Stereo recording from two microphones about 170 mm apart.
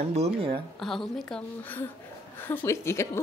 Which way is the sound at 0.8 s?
Centre (ahead or behind).